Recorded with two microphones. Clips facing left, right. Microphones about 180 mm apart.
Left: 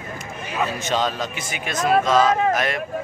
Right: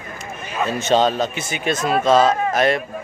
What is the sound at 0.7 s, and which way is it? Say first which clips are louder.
A man's voice: right 10 dB; 25° right (ahead or behind).